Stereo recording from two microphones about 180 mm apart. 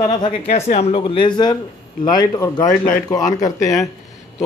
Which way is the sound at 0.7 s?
35° left (ahead or behind).